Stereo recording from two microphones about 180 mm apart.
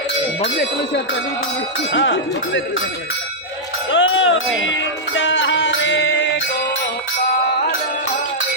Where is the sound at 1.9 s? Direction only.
90° left.